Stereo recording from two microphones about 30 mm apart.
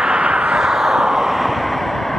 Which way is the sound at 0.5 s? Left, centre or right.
Centre.